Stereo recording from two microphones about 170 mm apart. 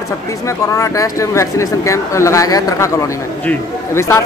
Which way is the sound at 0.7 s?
20° left (ahead or behind).